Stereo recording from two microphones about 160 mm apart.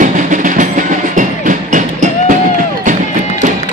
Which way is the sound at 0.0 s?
55° right (ahead or behind).